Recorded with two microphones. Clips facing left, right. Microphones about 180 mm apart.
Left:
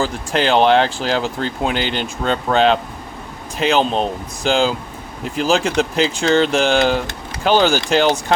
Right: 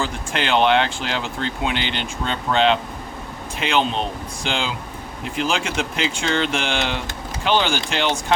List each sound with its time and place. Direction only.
0.0 s speech: 35° left (ahead or behind)